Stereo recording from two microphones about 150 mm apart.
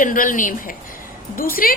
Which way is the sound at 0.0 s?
65° left (ahead or behind).